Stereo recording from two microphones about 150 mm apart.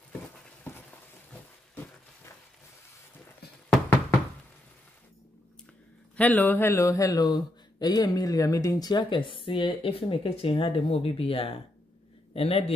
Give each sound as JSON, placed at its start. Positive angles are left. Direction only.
{"t": 6.1, "sound": "a man's voice", "side_deg": 10}